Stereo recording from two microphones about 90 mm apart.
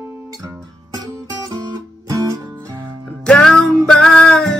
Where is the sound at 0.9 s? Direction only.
50° right (ahead or behind).